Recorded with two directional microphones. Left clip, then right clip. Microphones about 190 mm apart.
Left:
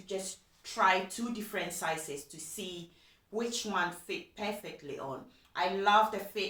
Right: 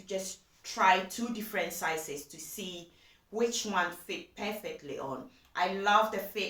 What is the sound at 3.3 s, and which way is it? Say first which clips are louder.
A woman's voice: right 3 dB; 20° right (ahead or behind).